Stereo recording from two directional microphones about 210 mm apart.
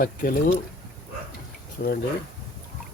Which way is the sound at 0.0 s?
45° left (ahead or behind).